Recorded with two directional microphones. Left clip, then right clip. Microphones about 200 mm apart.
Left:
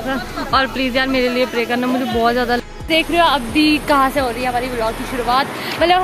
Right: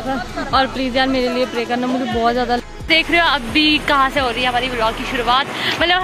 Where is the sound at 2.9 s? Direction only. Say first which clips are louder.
Even; centre (ahead or behind).